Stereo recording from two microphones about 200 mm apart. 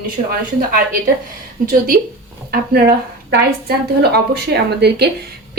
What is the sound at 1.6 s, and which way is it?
A woman's voice, 45° right (ahead or behind).